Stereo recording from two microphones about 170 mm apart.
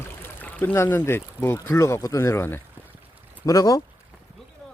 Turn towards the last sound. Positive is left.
turn(degrees=20)  # may be behind; listen again after turning